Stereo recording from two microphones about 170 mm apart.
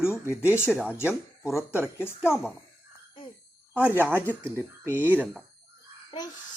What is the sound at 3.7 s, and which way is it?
Speech, 10° right (ahead or behind).